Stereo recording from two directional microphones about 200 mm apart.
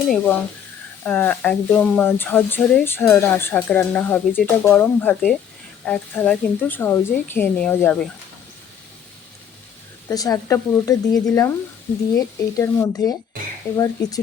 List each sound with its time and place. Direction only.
1.0 s speech: 10° left (ahead or behind)
10.1 s speech: 15° left (ahead or behind)